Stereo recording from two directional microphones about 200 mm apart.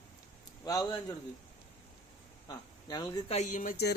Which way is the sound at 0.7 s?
20° left (ahead or behind).